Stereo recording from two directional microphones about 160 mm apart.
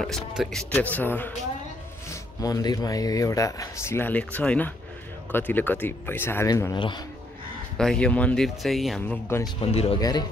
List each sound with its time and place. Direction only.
0.0 s speech: 5° left (ahead or behind)
2.0 s speech: 20° left (ahead or behind)
7.7 s speech: 5° left (ahead or behind)
9.6 s speech: 40° left (ahead or behind)
9.9 s speech: 25° left (ahead or behind)